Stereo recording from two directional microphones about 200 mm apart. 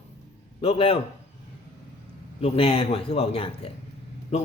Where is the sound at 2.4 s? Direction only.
30° left (ahead or behind).